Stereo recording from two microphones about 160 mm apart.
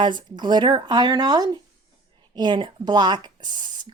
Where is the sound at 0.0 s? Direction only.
30° right (ahead or behind).